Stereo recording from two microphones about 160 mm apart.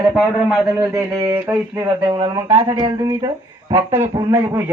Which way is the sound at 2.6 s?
20° right (ahead or behind).